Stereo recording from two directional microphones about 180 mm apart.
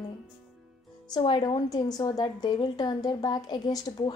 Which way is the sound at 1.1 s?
25° left (ahead or behind).